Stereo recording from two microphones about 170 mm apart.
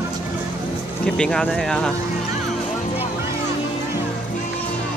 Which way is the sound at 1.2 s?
5° left (ahead or behind).